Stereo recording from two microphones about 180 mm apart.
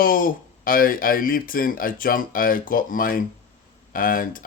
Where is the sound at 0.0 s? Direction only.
50° left (ahead or behind).